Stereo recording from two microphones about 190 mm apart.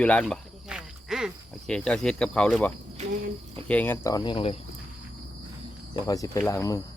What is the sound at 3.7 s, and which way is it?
Speech, 10° left (ahead or behind).